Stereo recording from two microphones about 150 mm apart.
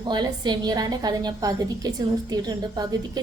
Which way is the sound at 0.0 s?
30° right (ahead or behind).